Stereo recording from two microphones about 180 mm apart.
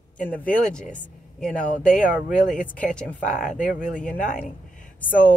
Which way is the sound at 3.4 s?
45° left (ahead or behind).